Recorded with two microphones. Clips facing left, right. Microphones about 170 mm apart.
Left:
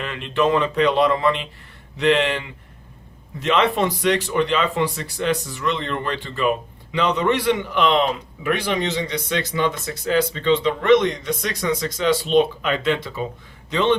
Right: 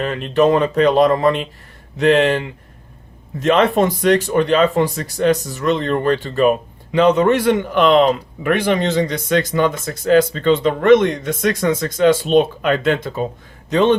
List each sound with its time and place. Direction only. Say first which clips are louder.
0.0 s a man's voice: right 6 dB; 40° right (ahead or behind)